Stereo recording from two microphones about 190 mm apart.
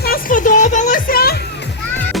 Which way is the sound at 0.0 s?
50° left (ahead or behind).